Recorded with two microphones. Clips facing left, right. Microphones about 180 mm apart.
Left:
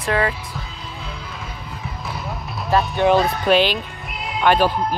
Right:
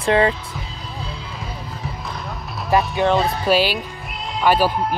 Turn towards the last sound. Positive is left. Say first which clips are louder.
# even
turn(degrees=-5)  # may be behind; listen again after turning